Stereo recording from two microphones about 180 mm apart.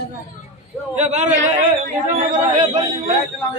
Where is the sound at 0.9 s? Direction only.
40° right (ahead or behind).